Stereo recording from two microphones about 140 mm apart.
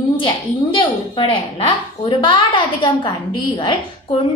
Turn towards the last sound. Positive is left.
turn(degrees=35)  # may be behind; listen again after turning